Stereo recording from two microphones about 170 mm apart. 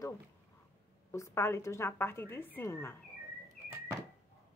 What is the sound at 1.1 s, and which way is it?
A woman's voice, 15° left (ahead or behind).